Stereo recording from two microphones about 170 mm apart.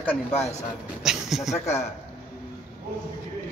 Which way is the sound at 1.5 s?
40° left (ahead or behind).